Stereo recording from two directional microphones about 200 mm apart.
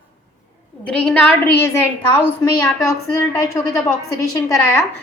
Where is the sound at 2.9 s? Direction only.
15° left (ahead or behind).